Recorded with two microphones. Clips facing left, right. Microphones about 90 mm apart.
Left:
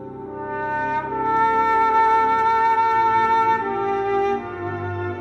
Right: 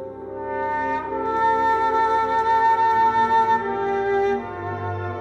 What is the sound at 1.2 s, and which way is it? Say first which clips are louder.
Brass instrument: left 5 dB; 40° left (ahead or behind).